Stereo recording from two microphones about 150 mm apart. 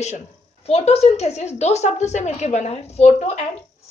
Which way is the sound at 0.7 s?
45° left (ahead or behind).